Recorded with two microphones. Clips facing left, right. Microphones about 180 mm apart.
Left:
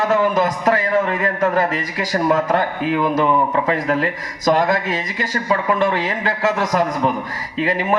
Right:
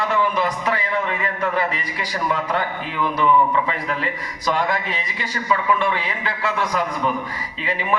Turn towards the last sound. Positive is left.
turn(degrees=45)  # may be behind; listen again after turning